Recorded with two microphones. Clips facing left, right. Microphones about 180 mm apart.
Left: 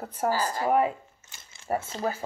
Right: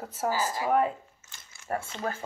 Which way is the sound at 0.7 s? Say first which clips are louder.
Left 2 dB; 5° left (ahead or behind).